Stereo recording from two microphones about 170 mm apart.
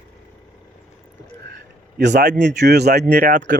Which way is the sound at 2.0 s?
85° right.